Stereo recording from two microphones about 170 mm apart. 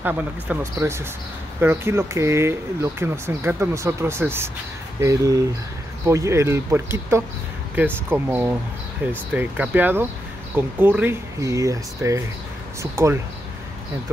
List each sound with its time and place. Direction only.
0.0 s speech: 10° right (ahead or behind)